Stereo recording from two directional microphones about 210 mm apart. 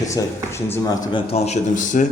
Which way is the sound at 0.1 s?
15° left (ahead or behind).